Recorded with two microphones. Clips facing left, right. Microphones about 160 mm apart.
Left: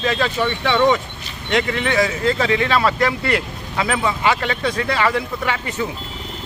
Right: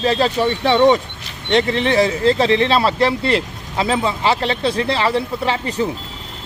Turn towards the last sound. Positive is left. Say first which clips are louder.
# right 3 dB
turn(degrees=-30)  # may be behind; listen again after turning